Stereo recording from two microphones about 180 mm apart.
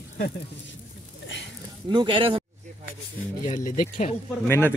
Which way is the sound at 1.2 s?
90° left.